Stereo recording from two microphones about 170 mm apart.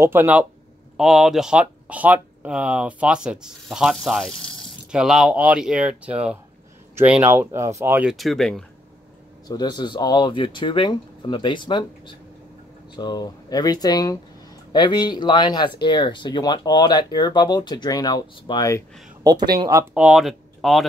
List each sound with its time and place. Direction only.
0.0 s speech: 15° right (ahead or behind); by 8.6 s 5° left (ahead or behind)
9.5 s speech: 25° left (ahead or behind)
19.2 s speech: 25° right (ahead or behind)
19.9 s speech: 5° right (ahead or behind)